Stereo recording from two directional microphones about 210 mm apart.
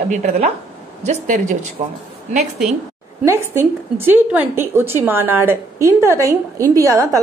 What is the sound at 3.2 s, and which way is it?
A woman's voice, 10° right (ahead or behind).